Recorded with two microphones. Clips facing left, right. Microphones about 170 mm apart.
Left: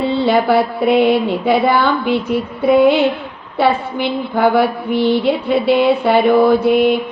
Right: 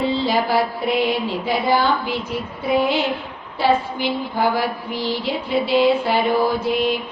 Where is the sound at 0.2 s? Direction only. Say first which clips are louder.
Left 6 dB; 60° left (ahead or behind).